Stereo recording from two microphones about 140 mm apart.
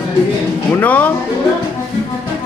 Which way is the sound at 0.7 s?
15° left (ahead or behind).